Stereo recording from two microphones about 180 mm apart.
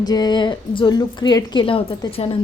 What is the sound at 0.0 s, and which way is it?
A woman's voice, 20° left (ahead or behind).